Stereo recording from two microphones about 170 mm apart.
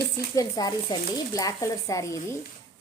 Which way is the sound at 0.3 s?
20° left (ahead or behind).